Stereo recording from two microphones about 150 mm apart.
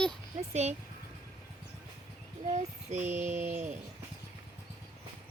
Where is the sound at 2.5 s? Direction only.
55° right (ahead or behind).